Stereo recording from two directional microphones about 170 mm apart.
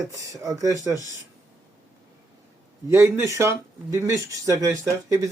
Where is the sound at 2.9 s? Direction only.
15° right (ahead or behind).